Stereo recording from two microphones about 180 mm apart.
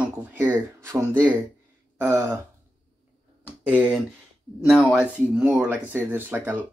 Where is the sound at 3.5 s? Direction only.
10° right (ahead or behind).